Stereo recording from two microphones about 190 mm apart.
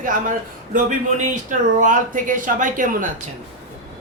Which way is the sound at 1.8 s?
40° right (ahead or behind).